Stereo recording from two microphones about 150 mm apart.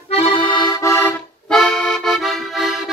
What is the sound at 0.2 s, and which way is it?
Accordion, 35° left (ahead or behind).